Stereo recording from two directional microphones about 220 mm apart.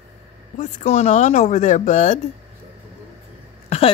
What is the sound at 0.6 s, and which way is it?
Speech, 30° left (ahead or behind).